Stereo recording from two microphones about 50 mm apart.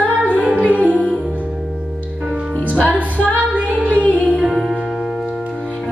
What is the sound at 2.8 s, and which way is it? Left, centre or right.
Music, left.